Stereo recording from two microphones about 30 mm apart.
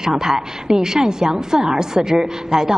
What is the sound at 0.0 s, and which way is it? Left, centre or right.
A woman's voice, centre.